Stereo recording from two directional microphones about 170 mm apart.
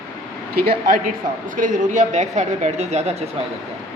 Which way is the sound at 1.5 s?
50° right (ahead or behind).